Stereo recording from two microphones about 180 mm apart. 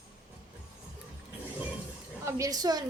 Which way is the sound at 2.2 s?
15° right (ahead or behind).